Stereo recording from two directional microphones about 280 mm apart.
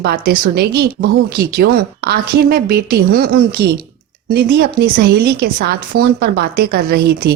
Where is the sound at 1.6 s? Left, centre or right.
Right.